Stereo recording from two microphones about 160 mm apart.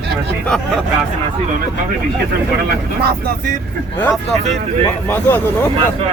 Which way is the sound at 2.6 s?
75° right (ahead or behind).